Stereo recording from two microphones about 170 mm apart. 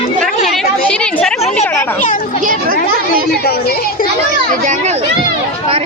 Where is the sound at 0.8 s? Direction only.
5° left (ahead or behind).